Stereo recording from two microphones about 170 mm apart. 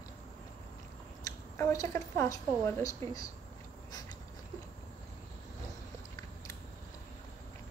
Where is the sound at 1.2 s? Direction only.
20° left (ahead or behind).